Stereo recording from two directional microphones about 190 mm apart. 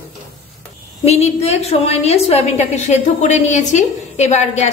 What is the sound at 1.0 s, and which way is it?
A woman's voice, 35° left (ahead or behind).